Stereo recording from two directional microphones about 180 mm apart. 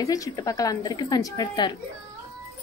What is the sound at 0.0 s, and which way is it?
A woman's voice, 20° left (ahead or behind).